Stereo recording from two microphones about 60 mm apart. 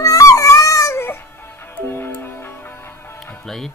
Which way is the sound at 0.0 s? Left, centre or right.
Left.